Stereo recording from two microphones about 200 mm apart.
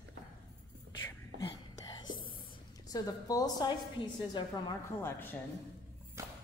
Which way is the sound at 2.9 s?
20° left (ahead or behind).